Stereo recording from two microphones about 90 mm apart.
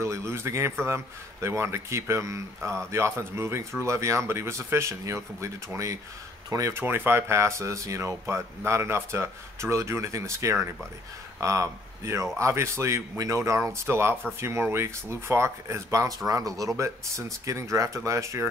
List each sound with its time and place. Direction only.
0.0 s speech: 30° right (ahead or behind)
6.7 s speech: 25° right (ahead or behind)